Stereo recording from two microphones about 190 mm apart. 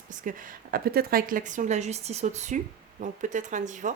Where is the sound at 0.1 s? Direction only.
45° right (ahead or behind).